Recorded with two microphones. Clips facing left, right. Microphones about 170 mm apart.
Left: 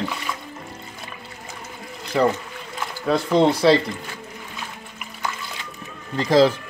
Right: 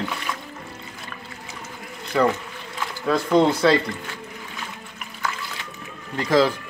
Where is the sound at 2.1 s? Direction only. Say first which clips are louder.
Left 1 dB; 25° left (ahead or behind).